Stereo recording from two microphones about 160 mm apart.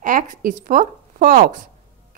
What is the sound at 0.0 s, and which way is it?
A woman's voice, 55° right (ahead or behind).